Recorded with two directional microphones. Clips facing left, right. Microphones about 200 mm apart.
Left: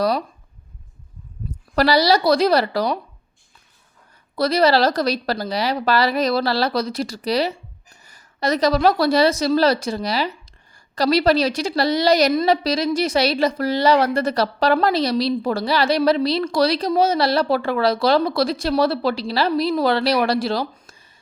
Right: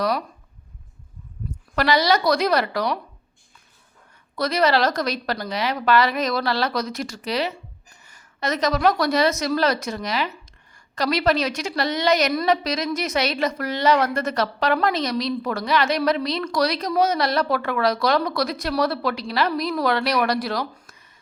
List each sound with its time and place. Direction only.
1.7 s a woman's voice: 35° left (ahead or behind)
4.4 s a woman's voice: 35° left (ahead or behind)